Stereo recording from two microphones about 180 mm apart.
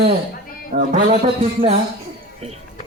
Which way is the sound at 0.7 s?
55° right (ahead or behind).